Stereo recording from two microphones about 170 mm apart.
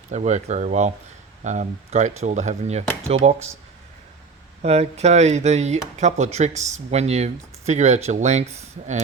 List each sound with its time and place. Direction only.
0.1 s speech: 45° right (ahead or behind)
4.6 s speech: 40° right (ahead or behind)